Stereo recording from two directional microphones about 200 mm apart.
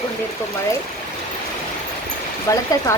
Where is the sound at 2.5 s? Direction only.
15° left (ahead or behind).